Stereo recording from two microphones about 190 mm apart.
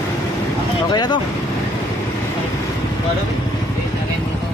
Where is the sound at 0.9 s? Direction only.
20° left (ahead or behind).